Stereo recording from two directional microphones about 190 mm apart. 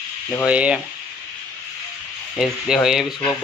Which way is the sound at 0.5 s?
5° right (ahead or behind).